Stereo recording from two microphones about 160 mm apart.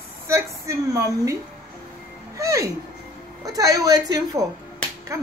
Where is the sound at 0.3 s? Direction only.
20° right (ahead or behind).